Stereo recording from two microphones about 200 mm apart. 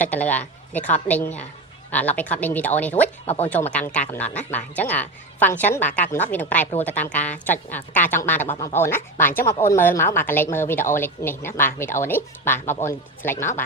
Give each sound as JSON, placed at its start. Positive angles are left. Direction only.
{"t": 0.0, "sound": "a woman's voice", "side_deg": 10}
{"t": 3.2, "sound": "speech", "side_deg": 30}
{"t": 3.5, "sound": "a woman's voice", "side_deg": 5}